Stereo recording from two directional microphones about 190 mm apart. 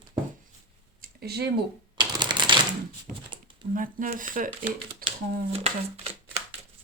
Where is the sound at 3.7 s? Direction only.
45° right (ahead or behind).